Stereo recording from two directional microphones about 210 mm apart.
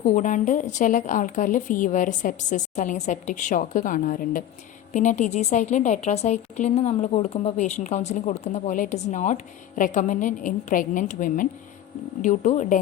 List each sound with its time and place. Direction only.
0.0 s a woman's voice: 35° left (ahead or behind)